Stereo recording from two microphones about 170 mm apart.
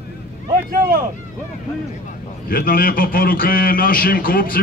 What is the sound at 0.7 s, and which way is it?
Speech, 55° right (ahead or behind).